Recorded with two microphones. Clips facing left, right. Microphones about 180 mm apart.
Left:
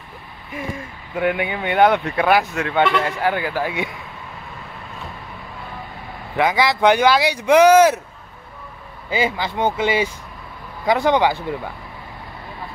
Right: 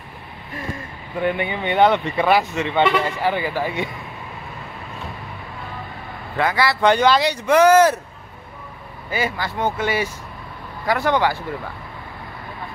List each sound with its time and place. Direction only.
1.1 s speech: 10° left (ahead or behind)
6.3 s speech: 15° left (ahead or behind)
9.1 s speech: 20° left (ahead or behind)